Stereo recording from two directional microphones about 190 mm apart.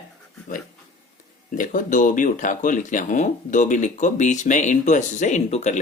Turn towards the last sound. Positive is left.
turn(degrees=35)  # may be behind; listen again after turning